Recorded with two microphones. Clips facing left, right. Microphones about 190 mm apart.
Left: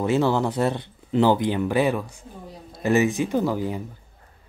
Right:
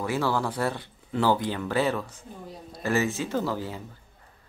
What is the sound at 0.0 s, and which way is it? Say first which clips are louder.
Speech: left 6 dB; 20° left (ahead or behind).